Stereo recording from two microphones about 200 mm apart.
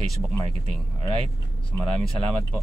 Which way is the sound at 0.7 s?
30° right (ahead or behind).